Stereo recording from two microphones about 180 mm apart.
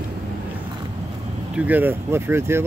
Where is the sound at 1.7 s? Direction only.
10° right (ahead or behind).